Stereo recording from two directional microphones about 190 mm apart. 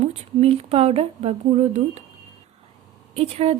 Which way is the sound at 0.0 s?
35° right (ahead or behind).